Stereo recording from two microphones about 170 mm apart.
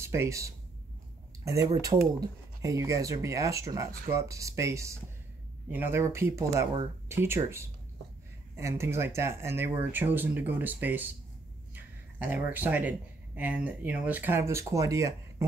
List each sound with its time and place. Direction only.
0.0 s speech: 15° right (ahead or behind)